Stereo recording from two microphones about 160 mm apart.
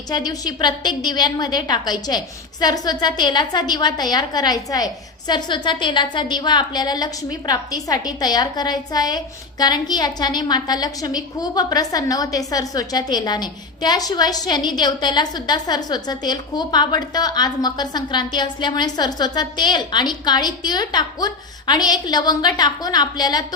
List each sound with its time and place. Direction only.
0.1 s a woman's voice: 25° left (ahead or behind)